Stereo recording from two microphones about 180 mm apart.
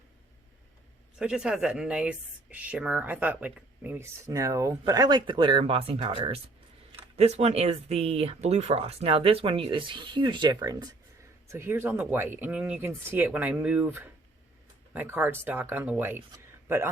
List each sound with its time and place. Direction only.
1.2 s a man's voice: 5° right (ahead or behind)